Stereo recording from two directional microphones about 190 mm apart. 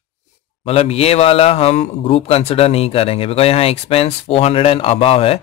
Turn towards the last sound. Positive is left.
turn(degrees=30)  # may be behind; listen again after turning